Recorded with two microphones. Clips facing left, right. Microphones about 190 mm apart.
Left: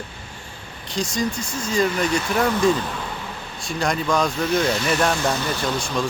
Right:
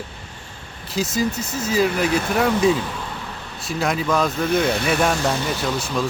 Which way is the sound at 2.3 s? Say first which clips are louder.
Right 1 dB; 5° right (ahead or behind).